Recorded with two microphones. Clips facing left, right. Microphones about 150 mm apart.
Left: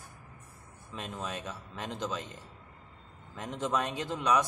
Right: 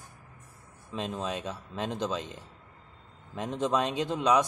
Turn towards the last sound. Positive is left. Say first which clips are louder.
# right 4 dB
turn(degrees=-20)  # may be behind; listen again after turning